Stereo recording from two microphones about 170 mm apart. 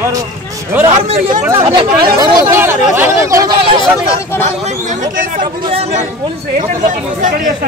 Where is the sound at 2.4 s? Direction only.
15° right (ahead or behind).